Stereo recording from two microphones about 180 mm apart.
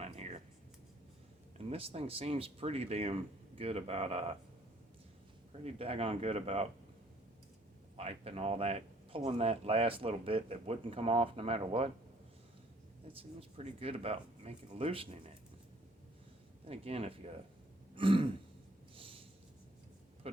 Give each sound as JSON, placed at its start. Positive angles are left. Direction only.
{"t": 0.0, "sound": "a sound", "side_deg": -35}
{"t": 1.5, "sound": "speech", "side_deg": -30}
{"t": 5.6, "sound": "speech", "side_deg": -30}
{"t": 7.9, "sound": "speech", "side_deg": -35}
{"t": 13.1, "sound": "speech", "side_deg": -30}
{"t": 16.6, "sound": "speech", "side_deg": -35}
{"t": 17.9, "sound": "throat clearing", "side_deg": -30}
{"t": 18.9, "sound": "a sound", "side_deg": -30}
{"t": 20.2, "sound": "pig", "side_deg": -35}